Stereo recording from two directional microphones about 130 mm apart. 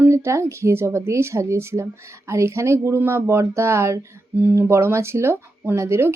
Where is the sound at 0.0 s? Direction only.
20° right (ahead or behind).